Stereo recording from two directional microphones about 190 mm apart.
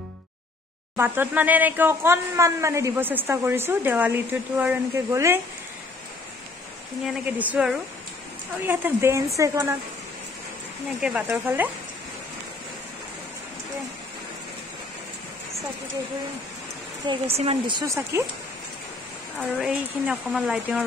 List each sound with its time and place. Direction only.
0.9 s speech: 10° right (ahead or behind)
7.3 s speech: 10° right (ahead or behind)
11.0 s speech: 5° right (ahead or behind)
17.0 s speech: 30° right (ahead or behind)
19.3 s speech: 5° right (ahead or behind)